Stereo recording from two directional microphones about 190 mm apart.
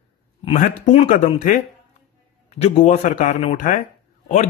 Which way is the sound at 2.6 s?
35° left (ahead or behind).